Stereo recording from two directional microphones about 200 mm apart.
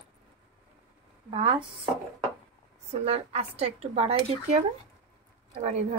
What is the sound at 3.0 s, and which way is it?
Speech, 30° right (ahead or behind).